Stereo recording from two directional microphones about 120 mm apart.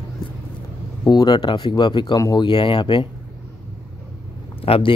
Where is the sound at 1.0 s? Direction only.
35° left (ahead or behind).